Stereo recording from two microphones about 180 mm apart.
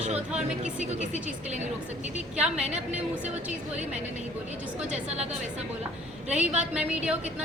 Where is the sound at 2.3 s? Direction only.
5° right (ahead or behind).